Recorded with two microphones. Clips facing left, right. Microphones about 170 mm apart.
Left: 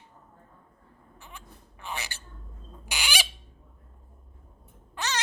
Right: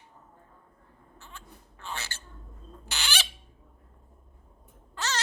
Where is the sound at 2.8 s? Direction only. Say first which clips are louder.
Left 2 dB; 10° left (ahead or behind).